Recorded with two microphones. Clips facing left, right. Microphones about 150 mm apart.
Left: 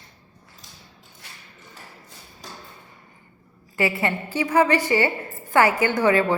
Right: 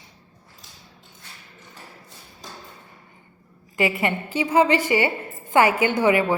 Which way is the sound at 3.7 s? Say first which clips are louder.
Right 1 dB; 15° right (ahead or behind).